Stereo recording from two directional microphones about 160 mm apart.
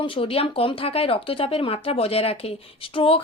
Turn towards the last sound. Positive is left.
turn(degrees=35)  # may be behind; listen again after turning